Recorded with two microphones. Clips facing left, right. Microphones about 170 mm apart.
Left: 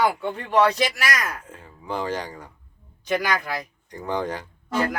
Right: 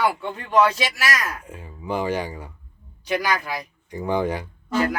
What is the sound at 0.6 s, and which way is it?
Speech, centre (ahead or behind).